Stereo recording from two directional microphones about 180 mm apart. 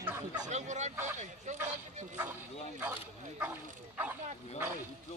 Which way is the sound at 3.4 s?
10° right (ahead or behind).